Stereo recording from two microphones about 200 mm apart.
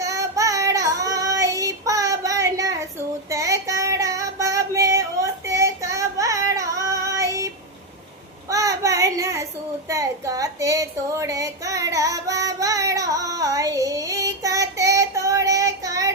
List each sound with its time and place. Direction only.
0.0 s child singing: 15° right (ahead or behind)